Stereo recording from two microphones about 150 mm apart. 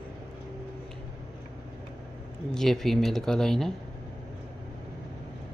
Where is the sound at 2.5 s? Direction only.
5° left (ahead or behind).